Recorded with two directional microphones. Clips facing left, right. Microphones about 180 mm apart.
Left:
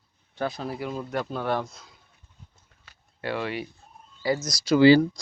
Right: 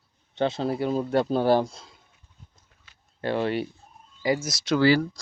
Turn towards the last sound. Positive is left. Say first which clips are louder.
# left 4 dB
turn(degrees=20)  # may be behind; listen again after turning